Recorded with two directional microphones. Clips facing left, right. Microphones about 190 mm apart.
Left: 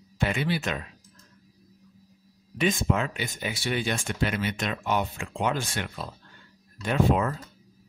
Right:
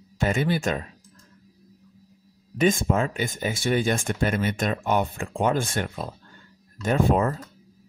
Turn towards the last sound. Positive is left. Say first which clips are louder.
# right 2 dB
turn(degrees=-40)  # may be behind; listen again after turning